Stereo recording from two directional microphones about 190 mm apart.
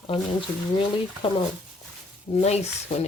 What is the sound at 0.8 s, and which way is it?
Speech, 30° left (ahead or behind).